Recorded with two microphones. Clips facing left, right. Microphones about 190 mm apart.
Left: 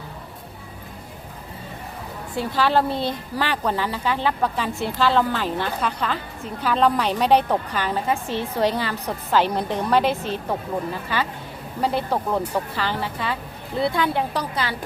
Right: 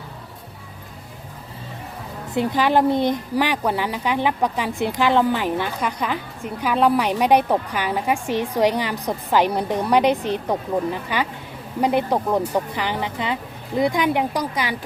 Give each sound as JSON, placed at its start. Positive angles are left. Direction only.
{"t": 2.3, "sound": "a woman's voice", "side_deg": -20}